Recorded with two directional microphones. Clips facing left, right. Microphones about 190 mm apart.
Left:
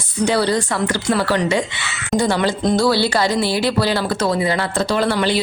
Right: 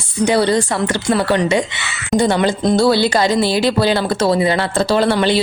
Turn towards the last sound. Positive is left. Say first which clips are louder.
# right 3 dB
turn(degrees=-25)  # may be behind; listen again after turning